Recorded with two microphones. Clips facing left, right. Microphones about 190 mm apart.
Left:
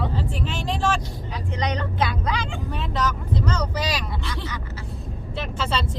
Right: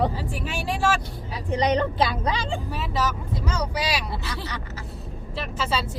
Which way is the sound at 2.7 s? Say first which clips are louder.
Left 3 dB; 5° right (ahead or behind).